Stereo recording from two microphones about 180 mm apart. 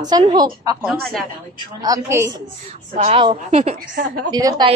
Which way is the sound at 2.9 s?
35° right (ahead or behind).